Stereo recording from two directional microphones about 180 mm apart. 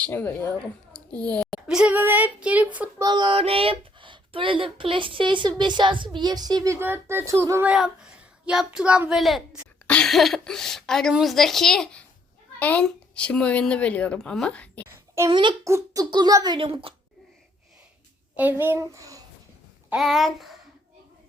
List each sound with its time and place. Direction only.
0.0 s speech: 10° left (ahead or behind); by 2.9 s 10° right (ahead or behind)
3.0 s a child's voice: 25° right (ahead or behind); by 14.8 s 5° left (ahead or behind)
15.3 s speech: 25° right (ahead or behind)
18.3 s speech: 10° right (ahead or behind)
19.9 s a child's voice: centre (ahead or behind)